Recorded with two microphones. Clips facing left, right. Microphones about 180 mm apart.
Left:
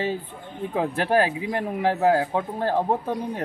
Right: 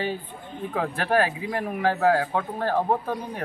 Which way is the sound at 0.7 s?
20° left (ahead or behind).